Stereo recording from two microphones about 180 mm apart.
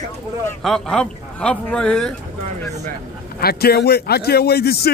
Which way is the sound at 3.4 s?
60° left (ahead or behind).